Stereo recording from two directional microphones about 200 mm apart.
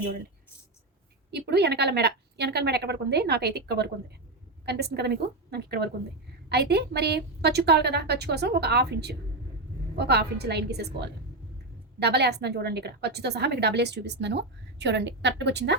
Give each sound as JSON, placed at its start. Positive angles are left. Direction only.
{"t": 1.3, "sound": "a woman's voice", "side_deg": -55}